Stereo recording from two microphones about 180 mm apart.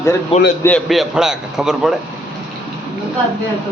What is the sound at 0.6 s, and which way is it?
A man's voice, 5° left (ahead or behind).